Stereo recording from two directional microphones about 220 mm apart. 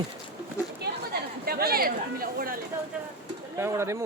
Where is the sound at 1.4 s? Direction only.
45° right (ahead or behind).